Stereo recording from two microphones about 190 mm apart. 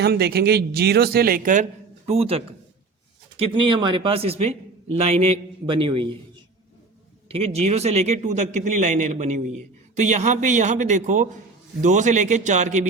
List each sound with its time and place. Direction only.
0.0 s speech: 60° right (ahead or behind)
2.0 s a man's voice: 30° right (ahead or behind)
7.3 s a man's voice: 30° right (ahead or behind)